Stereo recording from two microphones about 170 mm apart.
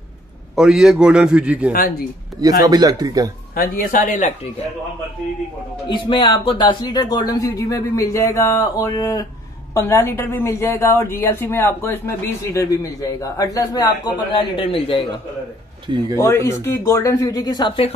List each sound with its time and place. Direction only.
0.6 s a man's voice: centre (ahead or behind)
1.7 s speech: 60° left (ahead or behind)
2.6 s speech: 25° right (ahead or behind)
3.5 s speech: 55° left (ahead or behind)
5.9 s a woman's voice: 30° left (ahead or behind)
16.2 s speech: 15° left (ahead or behind); by 17.9 s 30° left (ahead or behind)